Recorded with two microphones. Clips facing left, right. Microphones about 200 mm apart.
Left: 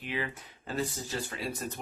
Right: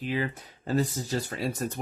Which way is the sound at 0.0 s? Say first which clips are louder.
Right 6 dB; 40° right (ahead or behind).